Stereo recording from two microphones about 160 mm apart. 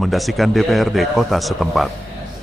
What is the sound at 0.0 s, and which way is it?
Speech, centre (ahead or behind).